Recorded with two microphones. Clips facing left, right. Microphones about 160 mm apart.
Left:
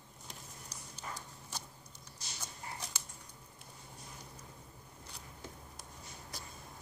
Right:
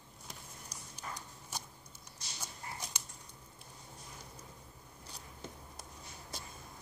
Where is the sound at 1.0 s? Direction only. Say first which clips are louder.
Even; 15° right (ahead or behind).